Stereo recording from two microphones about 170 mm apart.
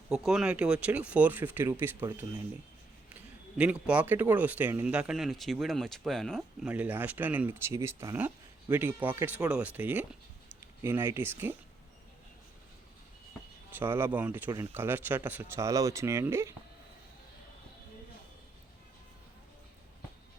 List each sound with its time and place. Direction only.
0.1 s speech: 5° right (ahead or behind)
3.6 s speech: 5° right (ahead or behind)
6.7 s speech: 10° right (ahead or behind)
13.7 s speech: 10° right (ahead or behind)